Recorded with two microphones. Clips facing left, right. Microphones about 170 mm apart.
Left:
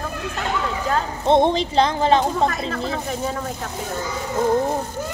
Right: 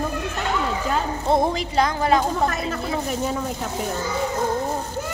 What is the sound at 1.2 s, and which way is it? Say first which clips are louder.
Speech: left 5 dB; 25° left (ahead or behind).